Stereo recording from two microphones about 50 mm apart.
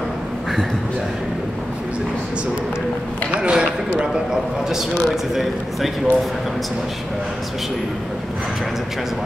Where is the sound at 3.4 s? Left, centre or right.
Centre.